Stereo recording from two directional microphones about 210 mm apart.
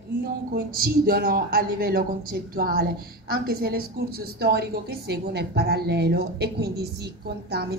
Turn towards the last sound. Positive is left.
turn(degrees=-50)  # may be behind; listen again after turning